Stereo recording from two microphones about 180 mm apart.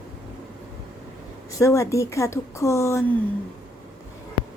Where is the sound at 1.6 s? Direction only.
15° left (ahead or behind).